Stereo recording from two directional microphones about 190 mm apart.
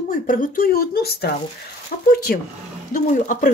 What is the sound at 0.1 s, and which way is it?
Speech, 45° left (ahead or behind).